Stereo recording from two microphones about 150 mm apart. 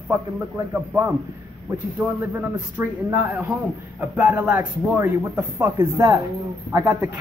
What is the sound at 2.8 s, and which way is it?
A man's voice, 10° right (ahead or behind).